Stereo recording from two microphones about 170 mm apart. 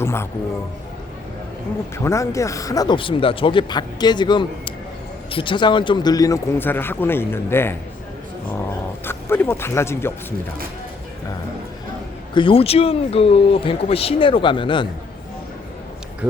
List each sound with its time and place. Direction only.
0.0 s music: 15° left (ahead or behind)
2.0 s speech: 20° left (ahead or behind)
9.0 s speech: 10° left (ahead or behind)
12.3 s speech: 30° left (ahead or behind)